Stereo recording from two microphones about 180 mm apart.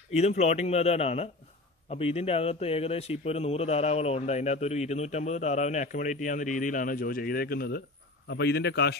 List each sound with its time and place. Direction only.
0.1 s speech: 35° left (ahead or behind); by 7.8 s 55° left (ahead or behind)
8.3 s a man's voice: 70° left (ahead or behind)